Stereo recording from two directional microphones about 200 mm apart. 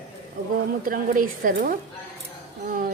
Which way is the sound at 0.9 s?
45° right (ahead or behind).